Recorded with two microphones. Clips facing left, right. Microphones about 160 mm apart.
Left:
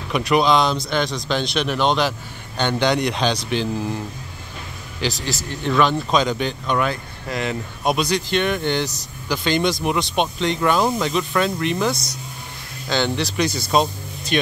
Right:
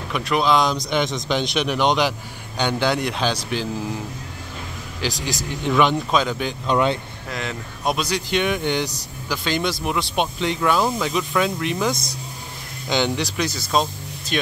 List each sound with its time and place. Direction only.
0.1 s speech: centre (ahead or behind)
0.6 s speech: 15° right (ahead or behind)
5.0 s speech: 15° right (ahead or behind)
6.0 s speech: 5° right (ahead or behind)
6.7 s speech: 25° right (ahead or behind)
7.2 s speech: 5° left (ahead or behind)
8.1 s speech: 10° right (ahead or behind)
13.7 s speech: 5° left (ahead or behind)